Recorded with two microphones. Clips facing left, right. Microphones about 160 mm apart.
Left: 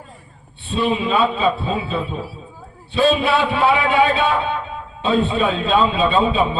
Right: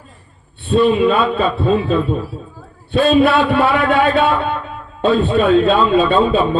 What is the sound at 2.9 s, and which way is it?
A man's voice, 55° right (ahead or behind).